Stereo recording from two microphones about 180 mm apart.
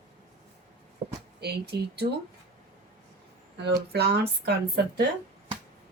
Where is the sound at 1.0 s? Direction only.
55° right (ahead or behind).